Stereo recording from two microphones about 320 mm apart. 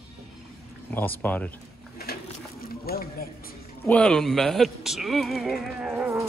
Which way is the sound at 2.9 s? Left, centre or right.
Left.